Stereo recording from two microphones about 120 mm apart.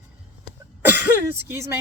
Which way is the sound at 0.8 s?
15° right (ahead or behind).